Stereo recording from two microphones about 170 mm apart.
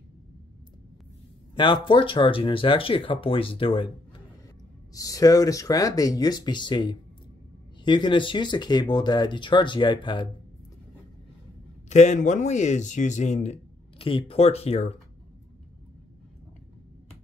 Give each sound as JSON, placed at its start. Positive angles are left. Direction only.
{"t": 1.5, "sound": "speech", "side_deg": 30}
{"t": 4.9, "sound": "speech", "side_deg": 20}
{"t": 11.9, "sound": "a man's voice", "side_deg": 45}